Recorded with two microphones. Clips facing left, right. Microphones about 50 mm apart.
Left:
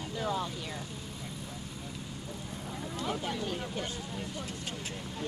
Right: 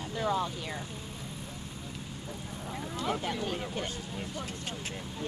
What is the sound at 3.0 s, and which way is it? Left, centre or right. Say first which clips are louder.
Speech: right 2 dB; right.